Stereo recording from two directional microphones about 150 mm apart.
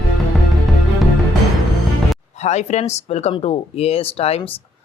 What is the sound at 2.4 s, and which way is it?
Speech, 45° left (ahead or behind).